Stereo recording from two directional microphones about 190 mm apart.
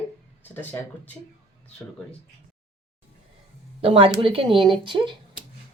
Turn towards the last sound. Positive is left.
turn(degrees=-25)  # may be behind; listen again after turning